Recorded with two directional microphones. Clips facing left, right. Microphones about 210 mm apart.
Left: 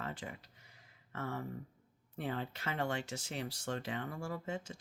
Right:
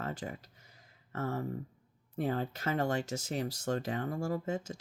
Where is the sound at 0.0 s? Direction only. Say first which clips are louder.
Right 5 dB; 40° right (ahead or behind).